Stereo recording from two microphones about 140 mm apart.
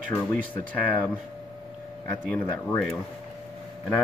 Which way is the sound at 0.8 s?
10° left (ahead or behind).